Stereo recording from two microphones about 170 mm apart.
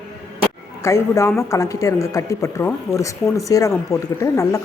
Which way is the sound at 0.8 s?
15° left (ahead or behind).